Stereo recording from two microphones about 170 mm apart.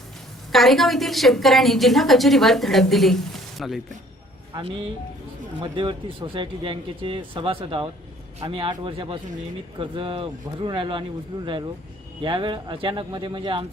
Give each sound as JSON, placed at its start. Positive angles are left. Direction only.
{"t": 0.5, "sound": "a woman's voice", "side_deg": 0}
{"t": 4.5, "sound": "speech", "side_deg": -30}
{"t": 12.2, "sound": "speech", "side_deg": -30}